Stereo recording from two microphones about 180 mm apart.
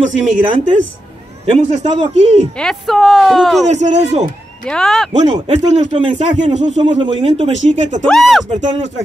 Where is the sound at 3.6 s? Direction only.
40° right (ahead or behind).